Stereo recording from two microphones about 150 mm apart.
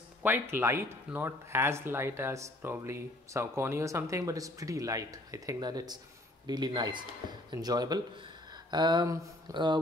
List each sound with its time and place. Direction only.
0.2 s speech: 15° right (ahead or behind); by 9.8 s 30° right (ahead or behind)